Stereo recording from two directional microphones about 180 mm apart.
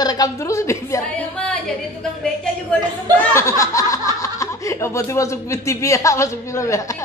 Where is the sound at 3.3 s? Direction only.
15° left (ahead or behind).